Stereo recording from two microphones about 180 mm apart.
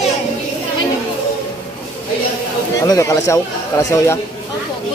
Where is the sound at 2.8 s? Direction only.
15° left (ahead or behind).